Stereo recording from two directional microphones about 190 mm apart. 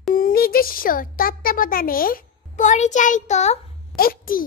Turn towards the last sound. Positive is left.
turn(degrees=50)  # may be behind; listen again after turning